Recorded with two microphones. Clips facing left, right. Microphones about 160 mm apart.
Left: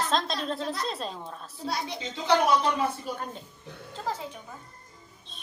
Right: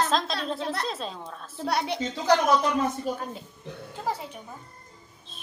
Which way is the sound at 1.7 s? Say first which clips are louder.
Right 5 dB; 65° right (ahead or behind).